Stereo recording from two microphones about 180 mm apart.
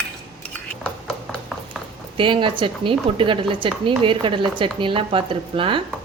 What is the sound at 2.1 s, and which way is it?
A woman's voice, 30° right (ahead or behind).